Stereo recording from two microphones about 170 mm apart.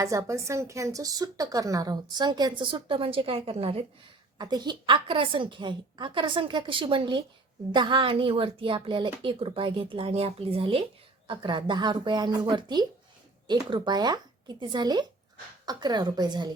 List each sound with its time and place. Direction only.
0.0 s a woman's voice: 20° right (ahead or behind); by 3.8 s 35° right (ahead or behind)
4.4 s a woman's voice: 25° right (ahead or behind)